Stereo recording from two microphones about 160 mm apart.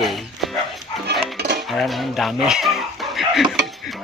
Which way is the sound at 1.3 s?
90° right.